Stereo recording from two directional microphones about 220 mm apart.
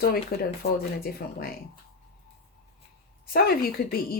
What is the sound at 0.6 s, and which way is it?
Speech, 45° left (ahead or behind).